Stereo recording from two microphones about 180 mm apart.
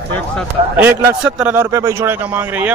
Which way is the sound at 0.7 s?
10° right (ahead or behind).